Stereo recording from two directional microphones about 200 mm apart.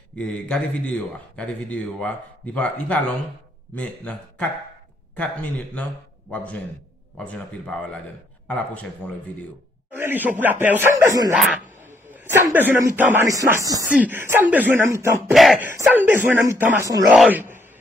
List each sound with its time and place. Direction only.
0.1 s a man's voice: 5° left (ahead or behind)
8.5 s a man's voice: 5° left (ahead or behind)
9.9 s speech: 10° right (ahead or behind)
11.6 s dog: 40° right (ahead or behind)
12.1 s speech: 10° right (ahead or behind)
15.3 s speech: centre (ahead or behind)
15.7 s a man's voice: 10° right (ahead or behind)